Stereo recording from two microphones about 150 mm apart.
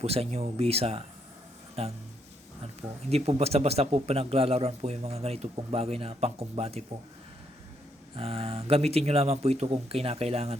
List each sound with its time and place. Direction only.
0.0 s speech: 45° right (ahead or behind)
3.1 s speech: 45° right (ahead or behind)
8.1 s speech: 40° right (ahead or behind)